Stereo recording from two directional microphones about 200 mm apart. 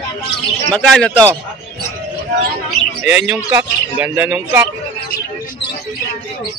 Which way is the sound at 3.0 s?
5° right (ahead or behind).